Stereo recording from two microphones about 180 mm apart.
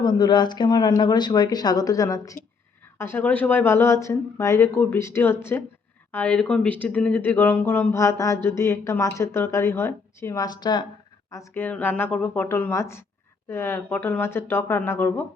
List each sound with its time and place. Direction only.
0.0 s speech: 25° left (ahead or behind)